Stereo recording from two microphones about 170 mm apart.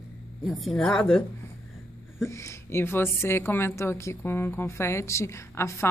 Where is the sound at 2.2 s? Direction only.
15° left (ahead or behind).